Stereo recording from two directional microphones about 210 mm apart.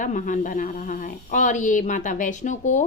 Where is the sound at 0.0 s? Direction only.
40° left (ahead or behind).